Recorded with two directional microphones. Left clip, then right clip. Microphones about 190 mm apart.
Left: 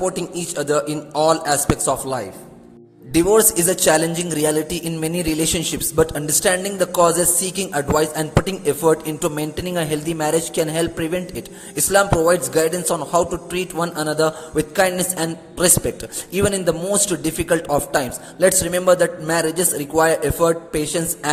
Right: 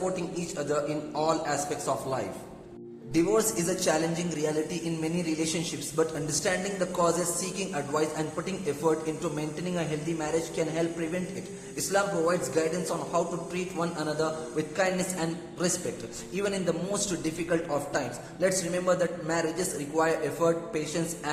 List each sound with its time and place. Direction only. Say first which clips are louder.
0.5 s a man's voice: left 10 dB; 40° left (ahead or behind)